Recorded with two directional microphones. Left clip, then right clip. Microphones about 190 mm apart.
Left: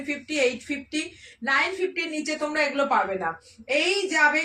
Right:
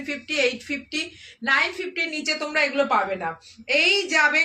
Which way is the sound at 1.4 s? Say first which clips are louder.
Right 2 dB; 15° right (ahead or behind).